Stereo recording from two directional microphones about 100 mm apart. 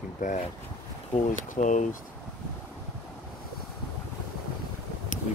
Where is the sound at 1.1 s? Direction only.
15° left (ahead or behind).